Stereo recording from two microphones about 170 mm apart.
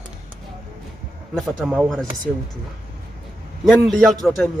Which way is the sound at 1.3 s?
5° right (ahead or behind).